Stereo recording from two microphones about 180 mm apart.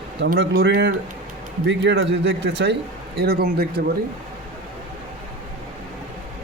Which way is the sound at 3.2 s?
60° right (ahead or behind).